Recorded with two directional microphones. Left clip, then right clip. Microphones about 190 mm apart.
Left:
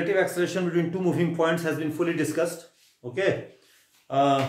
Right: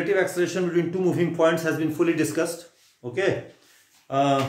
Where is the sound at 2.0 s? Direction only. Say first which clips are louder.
Right 2 dB; 15° right (ahead or behind).